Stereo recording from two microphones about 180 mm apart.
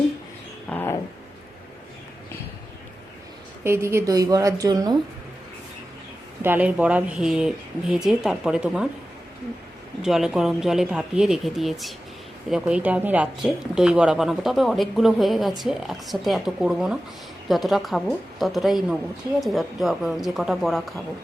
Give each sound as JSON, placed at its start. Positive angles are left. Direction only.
{"t": 0.7, "sound": "a sound", "side_deg": 10}
{"t": 3.6, "sound": "a woman's voice", "side_deg": -15}
{"t": 6.4, "sound": "speech", "side_deg": -10}
{"t": 10.0, "sound": "speech", "side_deg": 0}